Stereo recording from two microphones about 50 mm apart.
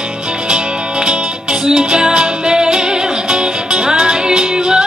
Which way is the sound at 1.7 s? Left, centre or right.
Centre.